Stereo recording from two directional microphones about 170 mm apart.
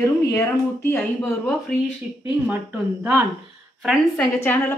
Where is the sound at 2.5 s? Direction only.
10° right (ahead or behind).